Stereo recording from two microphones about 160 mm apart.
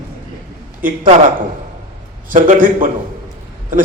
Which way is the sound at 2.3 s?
55° right (ahead or behind).